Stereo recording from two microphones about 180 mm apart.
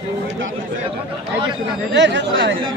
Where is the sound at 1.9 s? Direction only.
80° right.